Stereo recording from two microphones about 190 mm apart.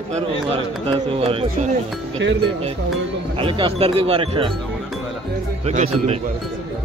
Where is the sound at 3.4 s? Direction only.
30° right (ahead or behind).